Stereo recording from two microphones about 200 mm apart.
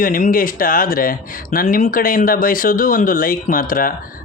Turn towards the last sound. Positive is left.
turn(degrees=45)  # may be behind; listen again after turning